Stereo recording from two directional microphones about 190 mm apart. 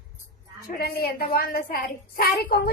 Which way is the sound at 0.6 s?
55° left (ahead or behind).